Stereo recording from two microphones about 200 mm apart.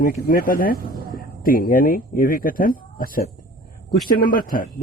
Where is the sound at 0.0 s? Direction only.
45° left (ahead or behind).